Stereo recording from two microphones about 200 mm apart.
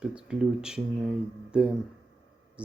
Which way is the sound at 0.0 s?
5° right (ahead or behind).